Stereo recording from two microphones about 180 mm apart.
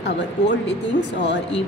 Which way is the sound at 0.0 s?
75° left (ahead or behind).